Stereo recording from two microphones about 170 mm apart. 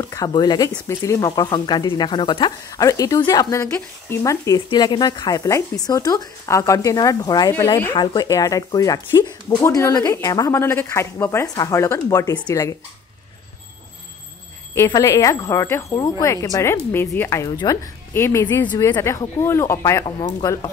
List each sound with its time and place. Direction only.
0.0 s speech: 20° left (ahead or behind)
14.7 s speech: 20° left (ahead or behind)